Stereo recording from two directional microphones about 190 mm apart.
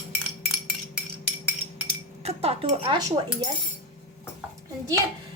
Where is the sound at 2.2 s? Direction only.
30° right (ahead or behind).